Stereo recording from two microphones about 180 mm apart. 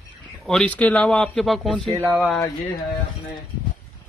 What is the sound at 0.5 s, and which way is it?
Speech, 5° left (ahead or behind).